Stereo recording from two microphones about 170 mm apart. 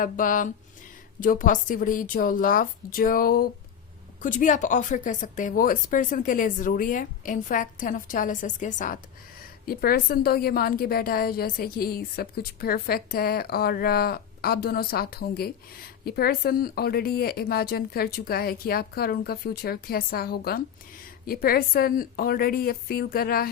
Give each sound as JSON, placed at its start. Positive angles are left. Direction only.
{"t": 0.0, "sound": "a woman's voice", "side_deg": 50}
{"t": 9.6, "sound": "a woman's voice", "side_deg": 60}